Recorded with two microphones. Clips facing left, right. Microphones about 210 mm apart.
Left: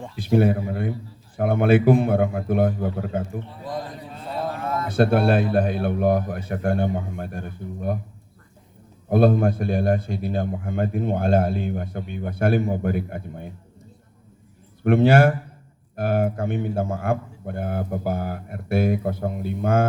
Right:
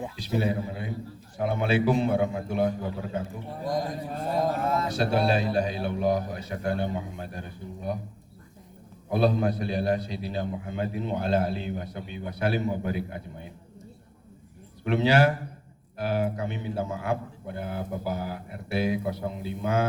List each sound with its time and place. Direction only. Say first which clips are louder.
0.2 s a man's voice: left 9 dB; 55° left (ahead or behind)
3.7 s a man's voice: right 3 dB; 15° right (ahead or behind)
4.1 s mantra: right 6 dB; 45° right (ahead or behind)
4.6 s a sound: even; 30° right (ahead or behind)
4.9 s a man's voice: left 9 dB; 55° left (ahead or behind)
9.0 s a man's voice: left 6 dB; 50° left (ahead or behind)
14.8 s a man's voice: left 6 dB; 50° left (ahead or behind)